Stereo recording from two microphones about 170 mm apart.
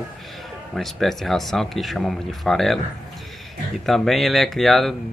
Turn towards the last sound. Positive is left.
turn(degrees=0)  # may be behind; listen again after turning